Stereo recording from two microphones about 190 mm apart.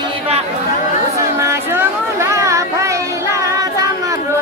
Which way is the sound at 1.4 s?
15° right (ahead or behind).